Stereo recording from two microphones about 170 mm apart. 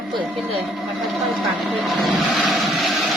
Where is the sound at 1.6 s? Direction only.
Centre (ahead or behind).